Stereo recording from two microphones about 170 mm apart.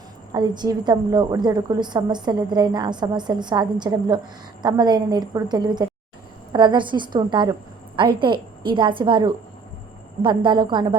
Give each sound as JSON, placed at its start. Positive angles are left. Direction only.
{"t": 0.3, "sound": "a woman's voice", "side_deg": -25}